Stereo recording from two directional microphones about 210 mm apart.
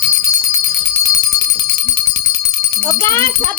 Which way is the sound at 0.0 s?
15° left (ahead or behind).